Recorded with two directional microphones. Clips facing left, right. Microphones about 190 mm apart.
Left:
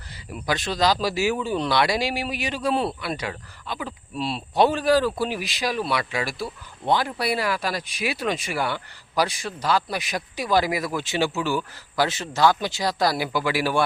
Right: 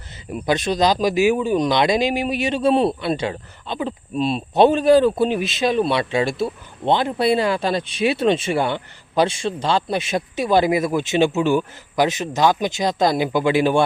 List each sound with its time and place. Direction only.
0.3 s speech: 20° right (ahead or behind)